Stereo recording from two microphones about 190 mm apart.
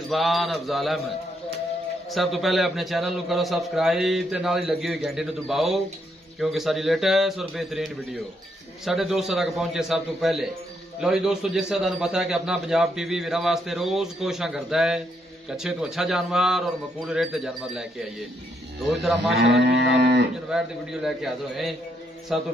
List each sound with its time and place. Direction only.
0.1 s a man's voice: centre (ahead or behind)
2.0 s a man's voice: centre (ahead or behind)
19.0 s a man's voice: centre (ahead or behind)
19.7 s cattle: 60° right (ahead or behind)
20.4 s a man's voice: 5° right (ahead or behind)